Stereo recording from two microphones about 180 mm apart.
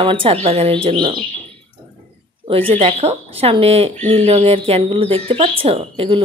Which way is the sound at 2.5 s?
30° right (ahead or behind).